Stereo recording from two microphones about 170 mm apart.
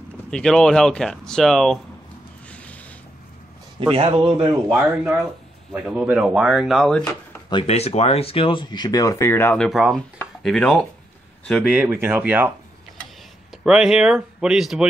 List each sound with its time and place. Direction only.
0.3 s speech: 5° left (ahead or behind)
2.5 s a sound: 5° left (ahead or behind)
3.8 s speech: 30° right (ahead or behind)
4.7 s speech: 5° right (ahead or behind)
7.4 s speech: 30° left (ahead or behind); by 9.7 s 15° left (ahead or behind)
9.7 s speech: centre (ahead or behind)
11.7 s speech: 10° right (ahead or behind)
13.7 s speech: 5° right (ahead or behind)